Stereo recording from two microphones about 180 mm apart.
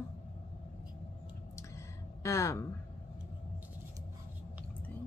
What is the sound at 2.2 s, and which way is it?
Speech, 15° left (ahead or behind).